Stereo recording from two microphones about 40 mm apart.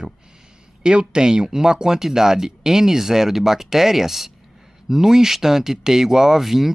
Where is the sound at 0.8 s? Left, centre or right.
Right.